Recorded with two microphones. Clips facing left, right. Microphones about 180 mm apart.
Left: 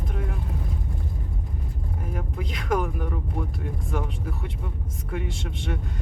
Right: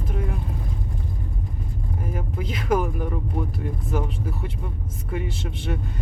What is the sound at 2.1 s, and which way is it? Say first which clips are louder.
Speech: right 2 dB; 5° right (ahead or behind).